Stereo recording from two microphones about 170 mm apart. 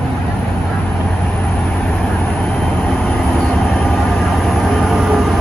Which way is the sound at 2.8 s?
5° left (ahead or behind).